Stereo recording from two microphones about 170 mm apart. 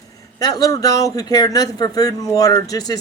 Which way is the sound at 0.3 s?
20° left (ahead or behind).